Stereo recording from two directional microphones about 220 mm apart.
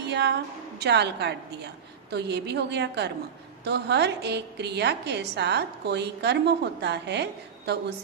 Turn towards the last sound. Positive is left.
turn(degrees=-50)  # may be behind; listen again after turning